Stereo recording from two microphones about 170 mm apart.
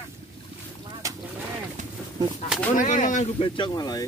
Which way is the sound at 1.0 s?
20° right (ahead or behind).